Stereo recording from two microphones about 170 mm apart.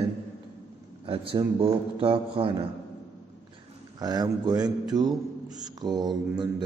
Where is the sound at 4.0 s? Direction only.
25° right (ahead or behind).